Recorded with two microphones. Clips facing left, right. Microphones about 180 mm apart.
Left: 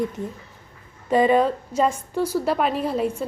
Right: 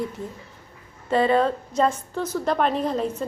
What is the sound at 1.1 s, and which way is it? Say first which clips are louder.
A woman's voice: left 2 dB; 15° left (ahead or behind).